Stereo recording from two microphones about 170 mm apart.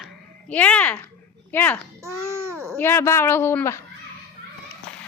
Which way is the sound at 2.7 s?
15° left (ahead or behind).